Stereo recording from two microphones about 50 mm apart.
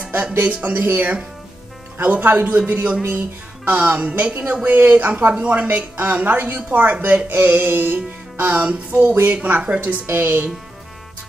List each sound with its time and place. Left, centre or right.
0.0 s music: right
0.5 s a woman's voice: right
5.3 s speech: right
5.7 s a woman's voice: right
9.6 s speech: right
10.0 s speech: right